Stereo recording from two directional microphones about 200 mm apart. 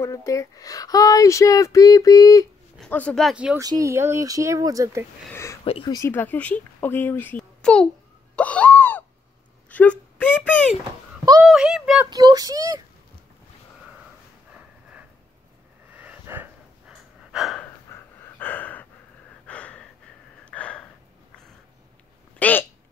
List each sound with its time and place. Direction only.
0.0 s speech: 15° left (ahead or behind)
2.8 s speech: 5° left (ahead or behind)
3.5 s speech: 15° right (ahead or behind)
5.3 s speech: 15° left (ahead or behind)
8.4 s a sound: 5° left (ahead or behind)
9.7 s speech: 10° left (ahead or behind)
12.1 s speech: 20° right (ahead or behind)
16.0 s a sound: 10° right (ahead or behind)
17.3 s gasp: centre (ahead or behind)
17.6 s gasp: 10° left (ahead or behind)
22.4 s a sound: 10° left (ahead or behind)